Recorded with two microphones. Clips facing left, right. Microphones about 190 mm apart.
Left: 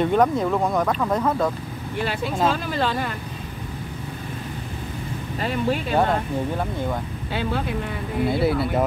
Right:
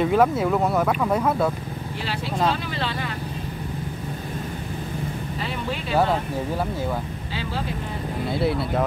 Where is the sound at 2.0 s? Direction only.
50° left (ahead or behind).